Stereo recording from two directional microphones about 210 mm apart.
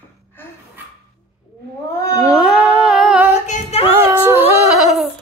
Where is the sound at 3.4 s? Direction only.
30° left (ahead or behind).